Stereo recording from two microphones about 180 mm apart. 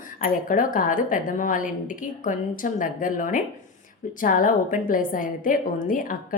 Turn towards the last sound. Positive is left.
turn(degrees=50)  # may be behind; listen again after turning